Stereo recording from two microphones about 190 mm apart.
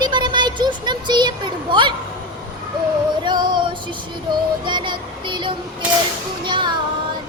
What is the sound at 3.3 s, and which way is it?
Music, 25° right (ahead or behind).